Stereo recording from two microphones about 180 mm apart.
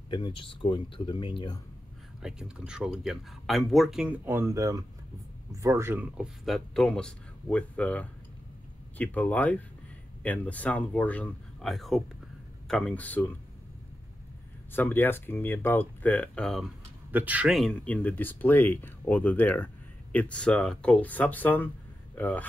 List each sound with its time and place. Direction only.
0.1 s speech: 30° left (ahead or behind)
2.2 s speech: 5° right (ahead or behind)
14.7 s speech: 10° left (ahead or behind)
17.1 s speech: 10° right (ahead or behind); by 22.5 s 10° left (ahead or behind)